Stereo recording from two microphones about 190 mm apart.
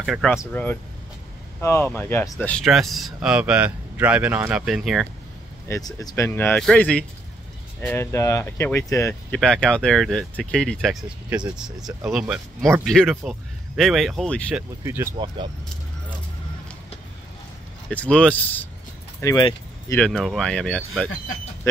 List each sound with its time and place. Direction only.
0.0 s speech: centre (ahead or behind)
0.4 s speech: 10° left (ahead or behind)
5.7 s speech: 20° left (ahead or behind)
9.4 s speech: 5° left (ahead or behind)
14.8 s speech: 10° right (ahead or behind)
15.1 s speech: 25° right (ahead or behind)
17.8 s speech: 5° left (ahead or behind)
20.0 s speech: centre (ahead or behind)